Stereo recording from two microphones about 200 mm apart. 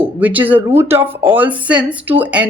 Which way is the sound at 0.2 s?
10° right (ahead or behind).